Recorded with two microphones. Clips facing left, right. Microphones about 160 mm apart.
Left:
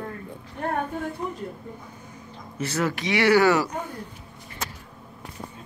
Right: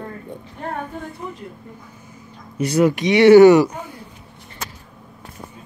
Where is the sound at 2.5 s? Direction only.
15° right (ahead or behind).